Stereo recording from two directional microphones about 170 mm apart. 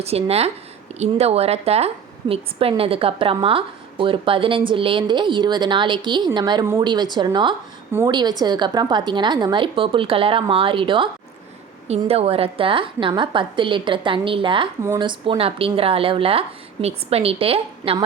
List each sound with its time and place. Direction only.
0.0 s a woman's voice: 35° right (ahead or behind)